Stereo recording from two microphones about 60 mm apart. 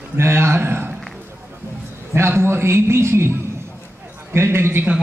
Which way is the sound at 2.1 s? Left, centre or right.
Right.